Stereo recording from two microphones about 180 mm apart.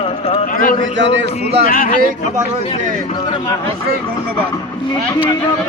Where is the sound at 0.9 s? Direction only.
85° right.